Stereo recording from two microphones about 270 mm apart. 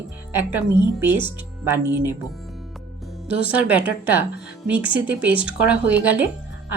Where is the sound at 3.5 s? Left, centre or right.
Centre.